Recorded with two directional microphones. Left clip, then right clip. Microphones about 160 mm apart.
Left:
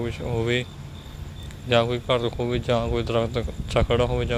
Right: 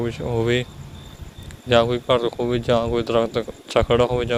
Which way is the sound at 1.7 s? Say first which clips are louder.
Right 4 dB; 45° right (ahead or behind).